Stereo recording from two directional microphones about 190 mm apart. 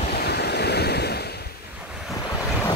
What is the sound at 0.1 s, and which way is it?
Waves, 60° left (ahead or behind).